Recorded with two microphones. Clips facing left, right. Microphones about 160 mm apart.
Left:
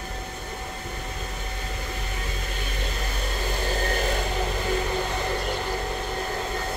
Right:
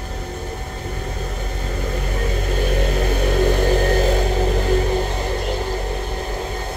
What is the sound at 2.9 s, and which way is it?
Vehicle, 65° right (ahead or behind).